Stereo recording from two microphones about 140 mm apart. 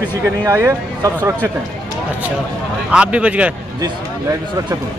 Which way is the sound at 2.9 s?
10° right (ahead or behind).